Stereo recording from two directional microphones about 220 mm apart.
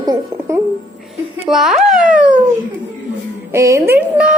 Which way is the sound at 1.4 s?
Centre (ahead or behind).